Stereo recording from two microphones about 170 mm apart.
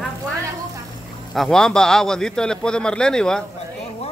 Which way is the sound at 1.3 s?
Centre (ahead or behind).